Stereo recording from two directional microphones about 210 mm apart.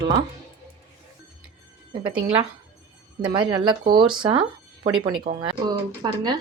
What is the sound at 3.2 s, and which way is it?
Speech, 20° right (ahead or behind).